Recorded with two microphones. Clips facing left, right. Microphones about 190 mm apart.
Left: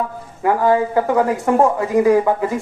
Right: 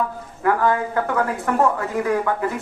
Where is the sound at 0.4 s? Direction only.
20° left (ahead or behind).